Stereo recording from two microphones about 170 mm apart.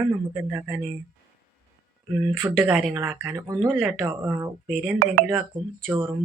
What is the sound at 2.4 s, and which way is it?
Speech, 15° right (ahead or behind).